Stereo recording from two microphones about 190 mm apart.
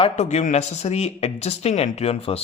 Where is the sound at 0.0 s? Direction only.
35° left (ahead or behind).